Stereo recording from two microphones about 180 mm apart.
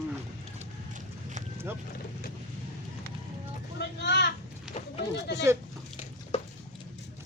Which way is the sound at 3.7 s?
70° left (ahead or behind).